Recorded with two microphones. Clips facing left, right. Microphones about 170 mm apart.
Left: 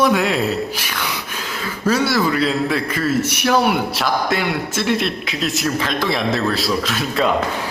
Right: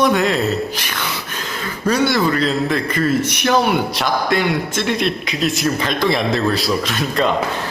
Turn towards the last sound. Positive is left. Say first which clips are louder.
# even
turn(degrees=5)  # may be behind; listen again after turning